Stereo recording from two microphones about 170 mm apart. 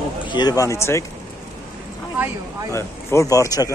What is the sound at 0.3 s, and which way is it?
Speech, 25° left (ahead or behind).